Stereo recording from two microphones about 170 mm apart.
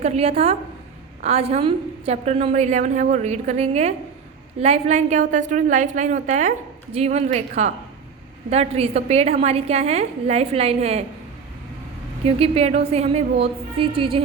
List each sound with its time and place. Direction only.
0.0 s a woman's voice: 40° right (ahead or behind)
12.2 s a woman's voice: 35° right (ahead or behind)